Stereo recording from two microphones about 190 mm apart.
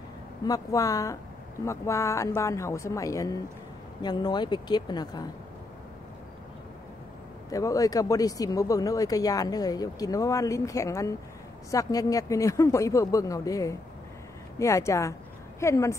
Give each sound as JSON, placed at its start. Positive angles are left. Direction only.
{"t": 0.5, "sound": "speech", "side_deg": 15}
{"t": 7.4, "sound": "speech", "side_deg": 15}